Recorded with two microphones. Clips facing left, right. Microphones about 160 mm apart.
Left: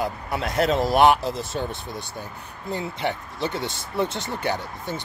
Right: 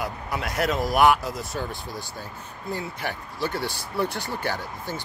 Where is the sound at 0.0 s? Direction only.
25° left (ahead or behind).